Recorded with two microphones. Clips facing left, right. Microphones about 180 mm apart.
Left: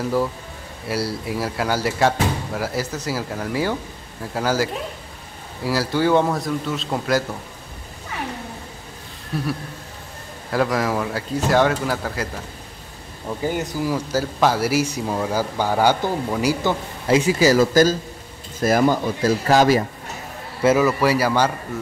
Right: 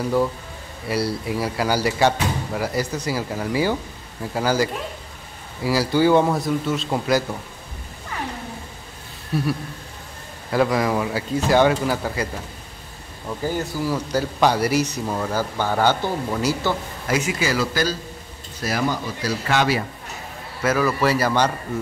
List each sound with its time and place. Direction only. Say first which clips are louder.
0.0 s speech: right 1 dB; centre (ahead or behind)
9.3 s speech: right 2 dB; centre (ahead or behind)
10.5 s speech: right 1 dB; centre (ahead or behind)
13.4 s speech: left 1 dB; 15° left (ahead or behind)
17.1 s speech: left 7 dB; 30° left (ahead or behind)
20.6 s a man's voice: left 4 dB; 20° left (ahead or behind)
21.0 s speech: left 1 dB; 10° left (ahead or behind)